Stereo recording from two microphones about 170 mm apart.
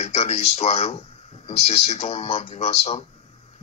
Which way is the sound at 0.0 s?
40° left (ahead or behind).